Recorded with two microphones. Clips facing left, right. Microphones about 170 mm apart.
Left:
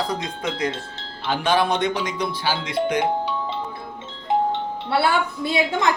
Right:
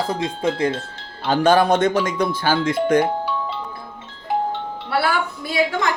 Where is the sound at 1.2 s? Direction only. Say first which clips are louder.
Right 5 dB; 45° right (ahead or behind).